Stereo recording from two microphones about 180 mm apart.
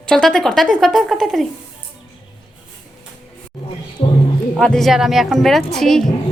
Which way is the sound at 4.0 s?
35° left (ahead or behind).